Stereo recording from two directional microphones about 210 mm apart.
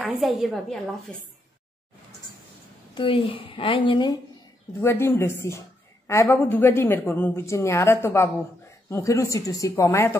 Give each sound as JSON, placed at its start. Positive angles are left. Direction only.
{"t": 0.0, "sound": "a woman's voice", "side_deg": 0}
{"t": 2.9, "sound": "a woman's voice", "side_deg": 25}